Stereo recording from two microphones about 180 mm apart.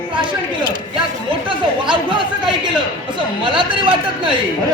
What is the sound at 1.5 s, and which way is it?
Chatter, 25° right (ahead or behind).